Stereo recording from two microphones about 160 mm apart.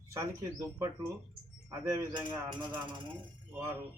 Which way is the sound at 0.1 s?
20° right (ahead or behind).